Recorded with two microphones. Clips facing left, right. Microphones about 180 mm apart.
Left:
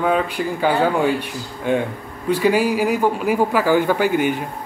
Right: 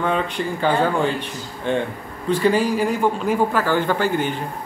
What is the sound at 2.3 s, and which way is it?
Speech, 10° left (ahead or behind).